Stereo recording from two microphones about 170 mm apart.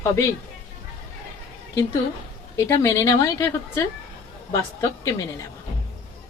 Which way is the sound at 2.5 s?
15° left (ahead or behind).